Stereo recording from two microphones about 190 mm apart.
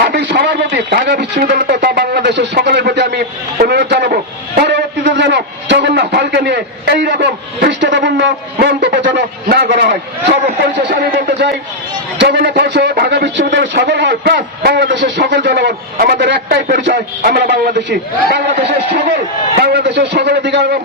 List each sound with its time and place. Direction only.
0.0 s a man's voice: 55° right (ahead or behind)